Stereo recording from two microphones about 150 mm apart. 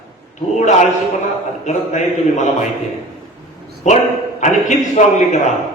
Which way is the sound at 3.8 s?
50° left (ahead or behind).